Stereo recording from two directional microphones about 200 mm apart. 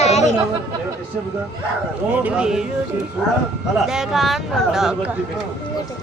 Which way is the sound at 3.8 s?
Centre (ahead or behind).